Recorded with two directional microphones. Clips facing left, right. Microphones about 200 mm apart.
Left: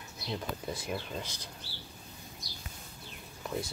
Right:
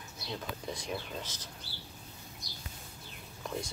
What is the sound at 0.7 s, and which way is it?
Speech, 5° left (ahead or behind).